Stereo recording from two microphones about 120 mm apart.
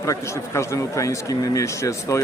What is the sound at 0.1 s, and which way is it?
A man's voice, 25° left (ahead or behind).